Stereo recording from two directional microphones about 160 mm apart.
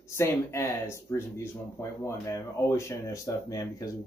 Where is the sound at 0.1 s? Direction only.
15° left (ahead or behind).